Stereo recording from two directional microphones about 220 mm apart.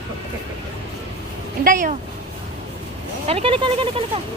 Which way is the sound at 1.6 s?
35° right (ahead or behind).